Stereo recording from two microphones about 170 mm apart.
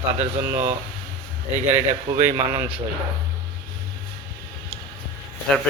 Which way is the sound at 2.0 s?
35° right (ahead or behind).